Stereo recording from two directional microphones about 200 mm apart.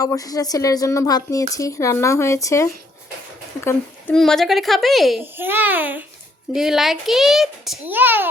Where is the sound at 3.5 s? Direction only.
15° left (ahead or behind).